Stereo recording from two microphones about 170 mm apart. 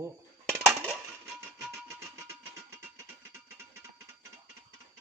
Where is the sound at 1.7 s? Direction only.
15° right (ahead or behind).